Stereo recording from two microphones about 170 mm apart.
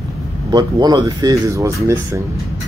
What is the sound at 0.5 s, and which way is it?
Speech, 25° right (ahead or behind).